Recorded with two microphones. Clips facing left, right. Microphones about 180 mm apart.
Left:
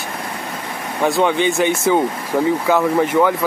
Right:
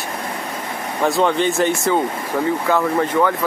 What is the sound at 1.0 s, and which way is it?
Speech, 5° left (ahead or behind).